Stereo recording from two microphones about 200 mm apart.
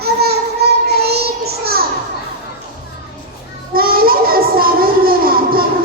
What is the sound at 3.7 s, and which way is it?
Child singing, 50° right (ahead or behind).